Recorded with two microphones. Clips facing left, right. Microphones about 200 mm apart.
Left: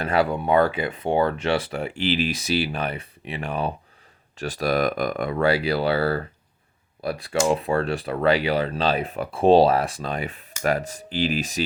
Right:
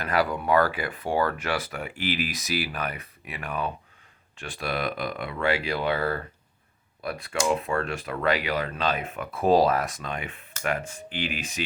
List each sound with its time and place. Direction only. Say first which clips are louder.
0.0 s speech: left 4 dB; 25° left (ahead or behind)
4.4 s speech: left 8 dB; 40° left (ahead or behind)